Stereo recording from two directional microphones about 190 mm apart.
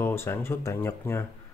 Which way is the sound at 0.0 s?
15° left (ahead or behind).